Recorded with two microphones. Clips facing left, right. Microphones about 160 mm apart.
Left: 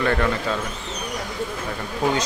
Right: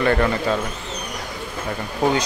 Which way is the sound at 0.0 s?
5° right (ahead or behind).